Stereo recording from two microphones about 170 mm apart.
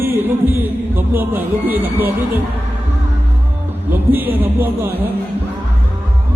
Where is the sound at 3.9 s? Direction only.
10° right (ahead or behind).